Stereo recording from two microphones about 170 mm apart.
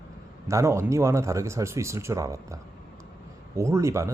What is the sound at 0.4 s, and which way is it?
Speech, 15° right (ahead or behind).